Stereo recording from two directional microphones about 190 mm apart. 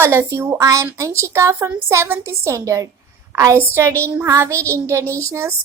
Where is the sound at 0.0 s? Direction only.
15° right (ahead or behind).